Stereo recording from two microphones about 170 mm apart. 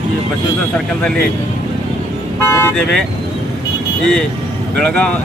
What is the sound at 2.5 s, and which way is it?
Speech, 15° left (ahead or behind).